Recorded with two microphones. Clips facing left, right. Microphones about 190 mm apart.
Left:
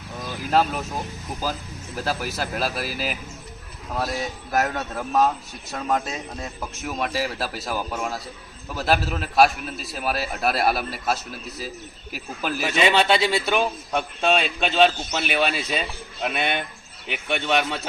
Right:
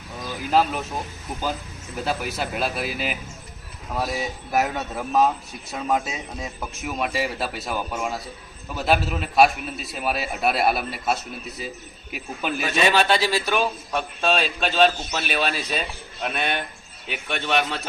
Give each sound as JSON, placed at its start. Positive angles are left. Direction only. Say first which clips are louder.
{"t": 0.5, "sound": "a man's voice", "louder": "even", "side_deg": 0}
{"t": 2.0, "sound": "a man's voice", "louder": "right 1 dB", "side_deg": 0}
{"t": 12.8, "sound": "a man's voice", "louder": "left 1 dB", "side_deg": 20}